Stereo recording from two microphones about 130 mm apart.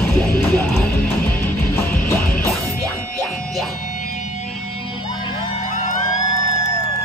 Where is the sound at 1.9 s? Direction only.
90° left.